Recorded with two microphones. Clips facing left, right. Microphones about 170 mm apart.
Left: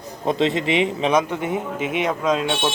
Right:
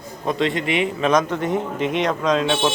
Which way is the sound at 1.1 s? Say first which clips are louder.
Right 1 dB; 10° left (ahead or behind).